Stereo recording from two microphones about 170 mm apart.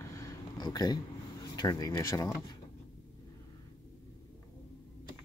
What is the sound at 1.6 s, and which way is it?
Speech, 25° left (ahead or behind).